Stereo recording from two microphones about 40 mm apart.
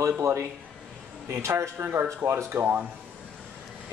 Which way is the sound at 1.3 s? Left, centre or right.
Right.